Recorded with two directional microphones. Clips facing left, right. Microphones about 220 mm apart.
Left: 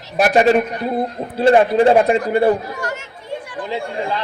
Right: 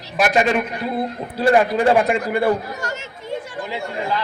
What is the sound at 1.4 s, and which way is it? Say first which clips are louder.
Speech: left 4 dB; 25° left (ahead or behind).